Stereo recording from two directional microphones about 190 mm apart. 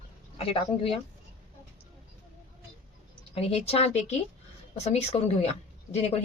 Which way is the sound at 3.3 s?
30° left (ahead or behind).